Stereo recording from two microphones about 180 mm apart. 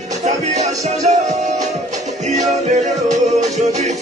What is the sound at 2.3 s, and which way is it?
Music, 40° right (ahead or behind).